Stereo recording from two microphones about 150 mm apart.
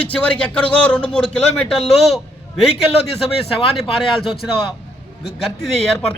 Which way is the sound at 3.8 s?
Centre (ahead or behind).